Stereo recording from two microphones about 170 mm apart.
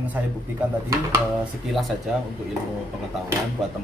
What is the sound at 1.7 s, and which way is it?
Speech, centre (ahead or behind).